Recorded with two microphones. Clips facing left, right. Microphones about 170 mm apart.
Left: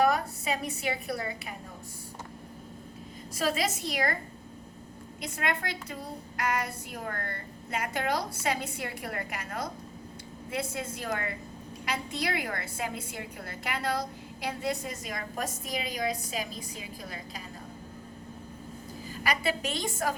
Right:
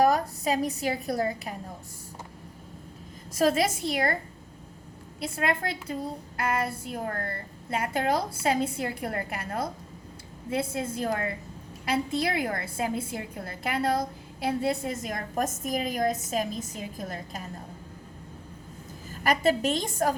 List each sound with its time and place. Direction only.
0.0 s a woman's voice: 40° right (ahead or behind)
3.9 s a woman's voice: 30° right (ahead or behind)
5.2 s a woman's voice: 30° right (ahead or behind)
15.4 s a woman's voice: 50° right (ahead or behind)
19.2 s a woman's voice: 45° right (ahead or behind)